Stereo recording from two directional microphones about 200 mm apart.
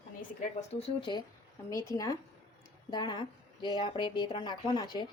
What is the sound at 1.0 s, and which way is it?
Speech, 20° left (ahead or behind).